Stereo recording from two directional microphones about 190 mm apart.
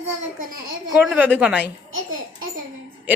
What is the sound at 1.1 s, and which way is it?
Speech, 10° right (ahead or behind).